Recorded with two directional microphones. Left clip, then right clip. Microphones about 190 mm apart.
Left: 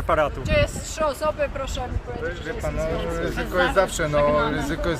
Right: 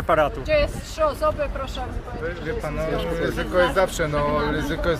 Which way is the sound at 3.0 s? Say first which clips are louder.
Right 2 dB; 5° right (ahead or behind).